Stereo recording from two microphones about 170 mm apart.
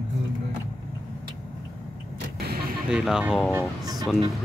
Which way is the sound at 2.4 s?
65° right (ahead or behind).